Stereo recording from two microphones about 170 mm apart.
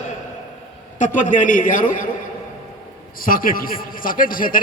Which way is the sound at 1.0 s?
45° left (ahead or behind).